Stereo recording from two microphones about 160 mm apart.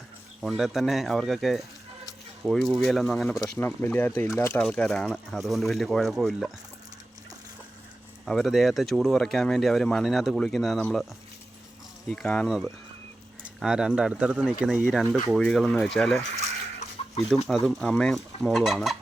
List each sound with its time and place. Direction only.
0.4 s speech: centre (ahead or behind)
3.4 s speech: 10° left (ahead or behind)
4.6 s speech: 5° left (ahead or behind)
8.2 s speech: centre (ahead or behind)
12.0 s speech: 5° left (ahead or behind)
17.5 s speech: centre (ahead or behind)